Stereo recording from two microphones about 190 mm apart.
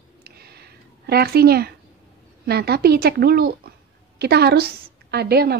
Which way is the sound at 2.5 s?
55° right (ahead or behind).